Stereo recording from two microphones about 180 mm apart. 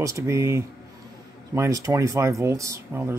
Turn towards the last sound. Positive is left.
turn(degrees=-15)  # may be behind; listen again after turning